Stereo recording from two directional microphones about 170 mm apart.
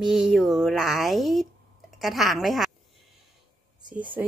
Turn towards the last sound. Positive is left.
turn(degrees=-10)  # may be behind; listen again after turning